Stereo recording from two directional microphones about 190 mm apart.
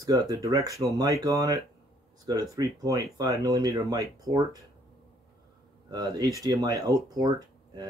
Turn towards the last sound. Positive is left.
turn(degrees=-20)  # may be behind; listen again after turning